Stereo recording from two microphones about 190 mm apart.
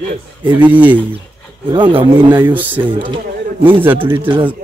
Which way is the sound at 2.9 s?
25° right (ahead or behind).